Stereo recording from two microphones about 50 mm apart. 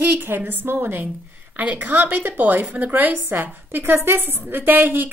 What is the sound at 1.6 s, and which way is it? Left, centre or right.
A woman's voice, right.